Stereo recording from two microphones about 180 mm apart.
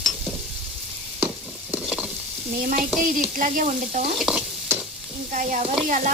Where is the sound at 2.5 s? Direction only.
50° right (ahead or behind).